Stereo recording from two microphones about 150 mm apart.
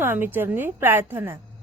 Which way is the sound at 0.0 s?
15° right (ahead or behind).